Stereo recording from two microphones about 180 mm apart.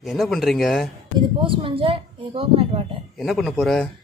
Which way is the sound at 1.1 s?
30° right (ahead or behind).